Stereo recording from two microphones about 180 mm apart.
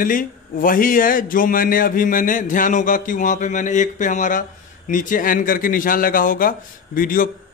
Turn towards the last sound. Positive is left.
turn(degrees=50)  # may be behind; listen again after turning